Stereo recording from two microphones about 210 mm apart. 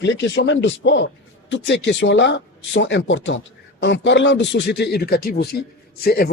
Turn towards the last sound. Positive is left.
turn(degrees=45)  # may be behind; listen again after turning